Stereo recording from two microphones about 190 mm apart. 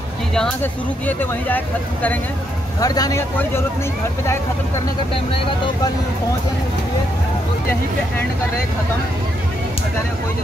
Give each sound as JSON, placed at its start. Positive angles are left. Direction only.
{"t": 0.3, "sound": "speech", "side_deg": 5}